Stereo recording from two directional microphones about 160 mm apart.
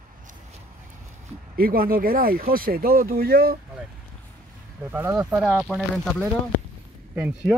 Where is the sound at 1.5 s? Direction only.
65° right (ahead or behind).